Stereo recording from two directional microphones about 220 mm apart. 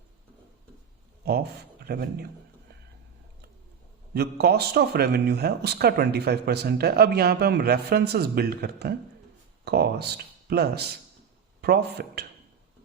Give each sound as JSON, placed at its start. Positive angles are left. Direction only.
{"t": 1.2, "sound": "speech", "side_deg": -45}
{"t": 4.1, "sound": "speech", "side_deg": -45}